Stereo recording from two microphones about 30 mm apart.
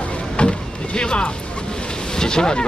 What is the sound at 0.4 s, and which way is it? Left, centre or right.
Vehicle, left.